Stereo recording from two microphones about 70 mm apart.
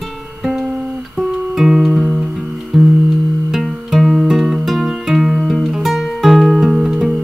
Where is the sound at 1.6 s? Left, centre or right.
Centre.